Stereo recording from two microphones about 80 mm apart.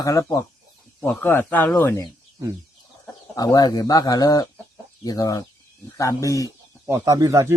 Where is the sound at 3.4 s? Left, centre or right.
Left.